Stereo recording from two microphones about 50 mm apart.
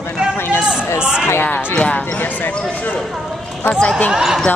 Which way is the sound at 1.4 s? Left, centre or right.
Left.